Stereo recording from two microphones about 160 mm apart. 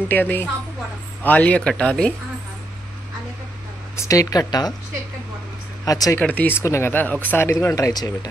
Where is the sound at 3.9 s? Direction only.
20° left (ahead or behind).